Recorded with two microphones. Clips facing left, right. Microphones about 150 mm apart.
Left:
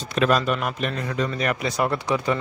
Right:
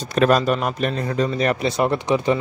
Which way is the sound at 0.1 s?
40° right (ahead or behind).